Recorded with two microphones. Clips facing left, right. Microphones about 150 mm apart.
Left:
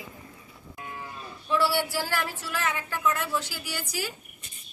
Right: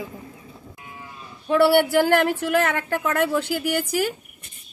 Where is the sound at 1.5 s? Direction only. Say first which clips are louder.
Right 9 dB; 60° right (ahead or behind).